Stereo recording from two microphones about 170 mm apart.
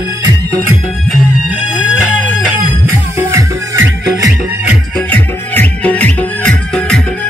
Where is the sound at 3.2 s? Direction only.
15° right (ahead or behind).